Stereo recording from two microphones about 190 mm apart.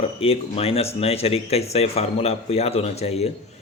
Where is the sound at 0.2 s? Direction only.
30° left (ahead or behind).